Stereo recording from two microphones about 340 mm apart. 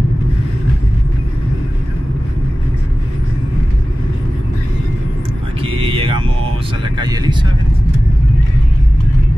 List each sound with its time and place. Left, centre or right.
5.6 s vehicle: centre